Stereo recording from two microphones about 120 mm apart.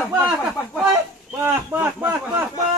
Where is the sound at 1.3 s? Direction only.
20° right (ahead or behind).